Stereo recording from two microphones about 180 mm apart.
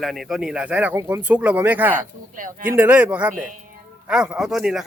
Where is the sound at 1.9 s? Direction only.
45° right (ahead or behind).